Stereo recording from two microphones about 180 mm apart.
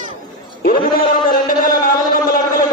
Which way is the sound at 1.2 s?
50° left (ahead or behind).